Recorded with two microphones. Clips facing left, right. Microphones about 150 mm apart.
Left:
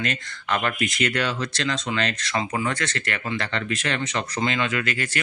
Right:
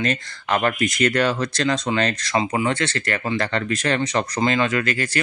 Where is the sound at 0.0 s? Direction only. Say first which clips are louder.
Right 5 dB; 40° right (ahead or behind).